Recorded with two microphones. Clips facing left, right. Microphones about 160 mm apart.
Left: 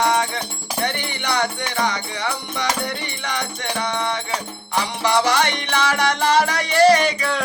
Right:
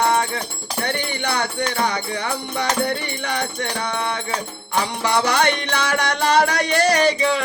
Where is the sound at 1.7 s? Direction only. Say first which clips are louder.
Right 1 dB; 55° right (ahead or behind).